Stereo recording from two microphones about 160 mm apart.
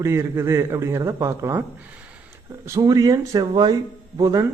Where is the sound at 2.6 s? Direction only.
20° right (ahead or behind).